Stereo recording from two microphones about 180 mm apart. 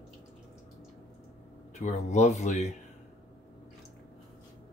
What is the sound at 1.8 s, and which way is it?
Speech, 40° left (ahead or behind).